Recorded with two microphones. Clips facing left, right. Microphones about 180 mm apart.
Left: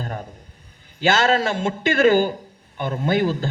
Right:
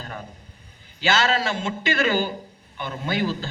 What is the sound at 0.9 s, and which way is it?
A man's voice, 50° left (ahead or behind).